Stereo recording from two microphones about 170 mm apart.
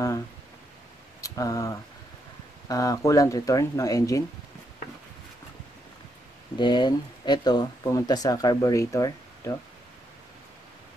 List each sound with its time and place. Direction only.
1.2 s speech: 20° left (ahead or behind)
6.6 s speech: 25° left (ahead or behind)